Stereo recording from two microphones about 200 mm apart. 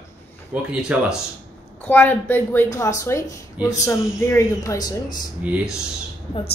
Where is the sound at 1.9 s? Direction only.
10° left (ahead or behind).